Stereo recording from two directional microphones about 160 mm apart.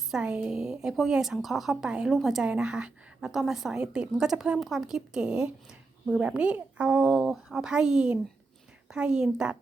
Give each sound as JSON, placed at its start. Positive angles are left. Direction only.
{"t": 0.1, "sound": "speech", "side_deg": -5}